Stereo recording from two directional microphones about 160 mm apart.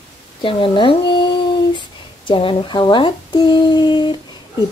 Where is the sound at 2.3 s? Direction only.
35° left (ahead or behind).